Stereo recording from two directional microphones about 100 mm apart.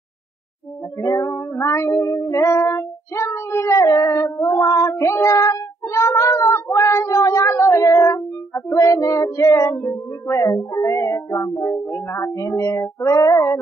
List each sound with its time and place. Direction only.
1.0 s female singing: 30° left (ahead or behind)
2.2 s cat: 30° left (ahead or behind)
10.3 s music: 35° left (ahead or behind)